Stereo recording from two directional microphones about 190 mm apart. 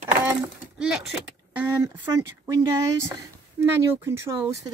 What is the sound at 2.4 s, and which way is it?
Speech, 15° right (ahead or behind).